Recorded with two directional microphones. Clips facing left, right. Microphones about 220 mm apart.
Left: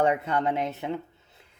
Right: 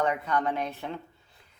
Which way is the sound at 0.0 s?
25° left (ahead or behind).